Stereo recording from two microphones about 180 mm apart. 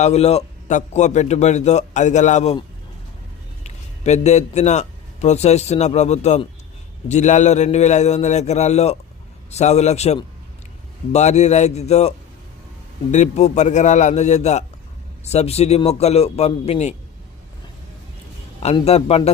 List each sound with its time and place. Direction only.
0.0 s a man's voice: 35° left (ahead or behind)
3.6 s a man's voice: 40° left (ahead or behind)
18.6 s a man's voice: 35° left (ahead or behind)